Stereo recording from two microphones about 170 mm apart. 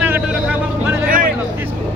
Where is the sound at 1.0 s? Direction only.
55° right (ahead or behind).